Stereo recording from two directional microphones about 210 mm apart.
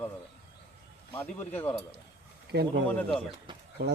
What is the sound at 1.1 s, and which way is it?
Speech, 10° left (ahead or behind).